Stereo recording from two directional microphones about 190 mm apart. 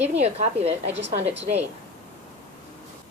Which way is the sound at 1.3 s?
70° right (ahead or behind).